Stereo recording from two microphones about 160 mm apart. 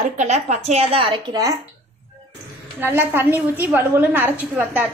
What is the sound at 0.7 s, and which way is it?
Speech, 40° right (ahead or behind).